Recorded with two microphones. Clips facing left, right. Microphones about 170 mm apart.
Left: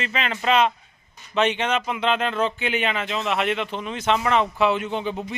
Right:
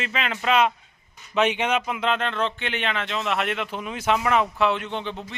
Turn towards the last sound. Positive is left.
turn(degrees=10)  # may be behind; listen again after turning